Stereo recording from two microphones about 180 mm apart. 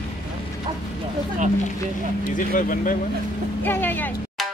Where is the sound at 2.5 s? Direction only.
50° left (ahead or behind).